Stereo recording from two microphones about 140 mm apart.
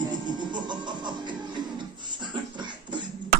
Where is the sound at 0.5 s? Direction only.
30° right (ahead or behind).